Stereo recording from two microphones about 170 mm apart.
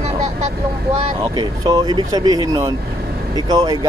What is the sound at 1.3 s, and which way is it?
Speech, 25° right (ahead or behind).